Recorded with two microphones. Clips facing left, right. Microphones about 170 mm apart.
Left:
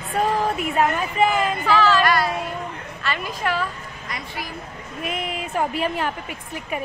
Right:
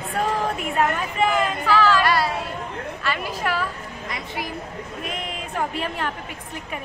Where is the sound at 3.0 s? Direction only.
10° right (ahead or behind).